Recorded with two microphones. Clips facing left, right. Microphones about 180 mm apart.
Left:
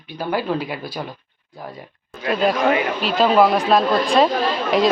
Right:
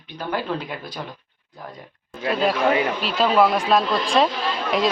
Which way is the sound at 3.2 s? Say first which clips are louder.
Left 3 dB; centre (ahead or behind).